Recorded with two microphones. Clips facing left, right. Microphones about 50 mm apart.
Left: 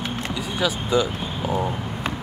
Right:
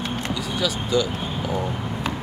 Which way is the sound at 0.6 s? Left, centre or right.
Left.